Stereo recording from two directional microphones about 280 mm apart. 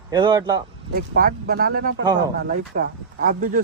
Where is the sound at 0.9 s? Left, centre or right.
Right.